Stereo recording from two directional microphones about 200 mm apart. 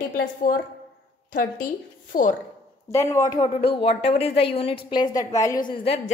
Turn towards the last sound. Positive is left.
turn(degrees=25)  # may be behind; listen again after turning